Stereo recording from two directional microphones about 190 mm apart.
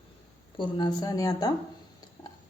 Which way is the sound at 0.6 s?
20° left (ahead or behind).